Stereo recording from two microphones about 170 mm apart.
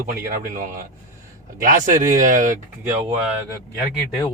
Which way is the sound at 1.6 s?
50° right (ahead or behind).